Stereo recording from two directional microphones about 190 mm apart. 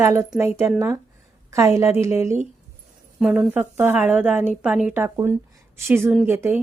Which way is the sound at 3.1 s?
Centre (ahead or behind).